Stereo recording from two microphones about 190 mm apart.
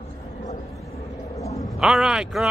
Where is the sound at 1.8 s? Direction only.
5° right (ahead or behind).